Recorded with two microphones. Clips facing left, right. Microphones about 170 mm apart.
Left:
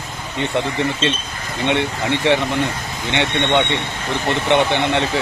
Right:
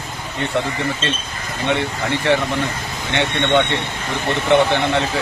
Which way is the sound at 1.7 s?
20° left (ahead or behind).